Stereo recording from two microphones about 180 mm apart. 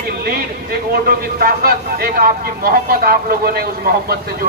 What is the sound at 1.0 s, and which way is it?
A man's voice, 55° right (ahead or behind).